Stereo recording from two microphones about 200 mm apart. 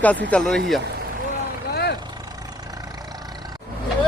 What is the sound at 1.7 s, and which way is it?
Vehicle, 55° left (ahead or behind).